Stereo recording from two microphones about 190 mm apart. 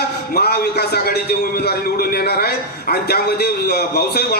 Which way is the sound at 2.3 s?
55° left (ahead or behind).